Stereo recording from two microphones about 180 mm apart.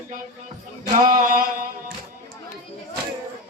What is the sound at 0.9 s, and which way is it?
Music, 50° right (ahead or behind).